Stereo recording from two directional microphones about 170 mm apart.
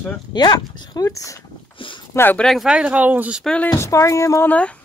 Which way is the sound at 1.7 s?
30° left (ahead or behind).